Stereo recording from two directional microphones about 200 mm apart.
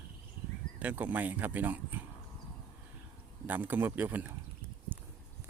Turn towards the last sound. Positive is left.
turn(degrees=-10)  # may be behind; listen again after turning